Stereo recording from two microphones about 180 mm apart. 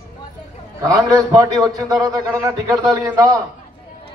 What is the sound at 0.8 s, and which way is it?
A man's voice, 20° right (ahead or behind).